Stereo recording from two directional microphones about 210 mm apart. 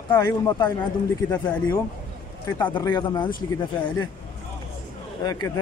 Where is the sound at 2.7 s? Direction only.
20° left (ahead or behind).